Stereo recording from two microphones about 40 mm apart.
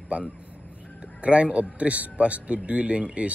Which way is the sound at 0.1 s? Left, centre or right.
Right.